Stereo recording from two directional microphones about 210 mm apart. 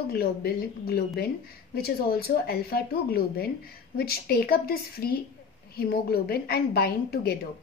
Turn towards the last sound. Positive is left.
turn(degrees=50)  # may be behind; listen again after turning